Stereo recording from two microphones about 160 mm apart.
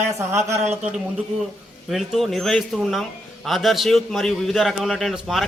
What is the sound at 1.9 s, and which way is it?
A man's voice, centre (ahead or behind).